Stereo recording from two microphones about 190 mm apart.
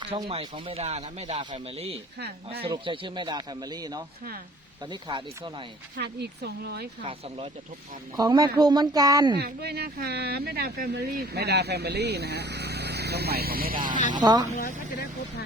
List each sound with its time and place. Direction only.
0.2 s a man's voice: 30° right (ahead or behind)
6.0 s speech: 60° right (ahead or behind)
8.1 s a man's voice: 20° right (ahead or behind)
9.4 s speech: 60° right (ahead or behind)
14.1 s a man's voice: 20° right (ahead or behind)